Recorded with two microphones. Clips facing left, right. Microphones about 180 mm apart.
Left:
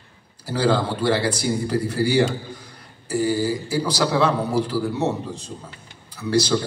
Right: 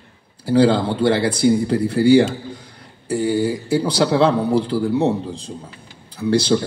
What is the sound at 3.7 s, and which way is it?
A man's voice, 25° right (ahead or behind).